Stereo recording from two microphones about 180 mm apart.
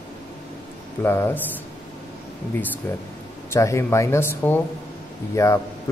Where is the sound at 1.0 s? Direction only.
15° left (ahead or behind).